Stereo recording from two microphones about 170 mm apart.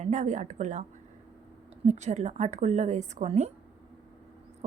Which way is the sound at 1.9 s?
45° right (ahead or behind).